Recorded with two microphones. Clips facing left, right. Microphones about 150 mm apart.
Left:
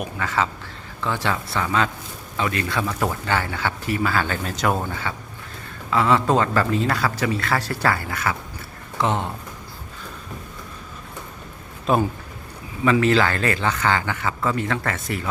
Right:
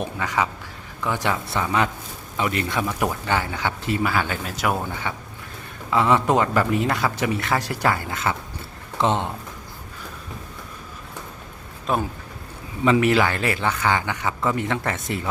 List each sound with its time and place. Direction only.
0.2 s a man's voice: 15° right (ahead or behind)
11.9 s speech: centre (ahead or behind)
12.8 s a man's voice: 15° right (ahead or behind)